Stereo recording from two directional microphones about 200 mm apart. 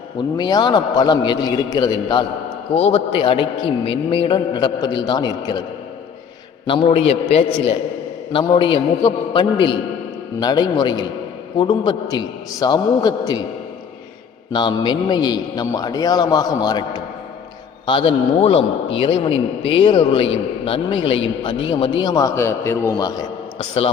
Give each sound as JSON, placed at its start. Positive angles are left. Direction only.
{"t": 0.3, "sound": "a man's voice", "side_deg": 20}
{"t": 6.7, "sound": "a man's voice", "side_deg": 25}
{"t": 14.5, "sound": "a man's voice", "side_deg": 20}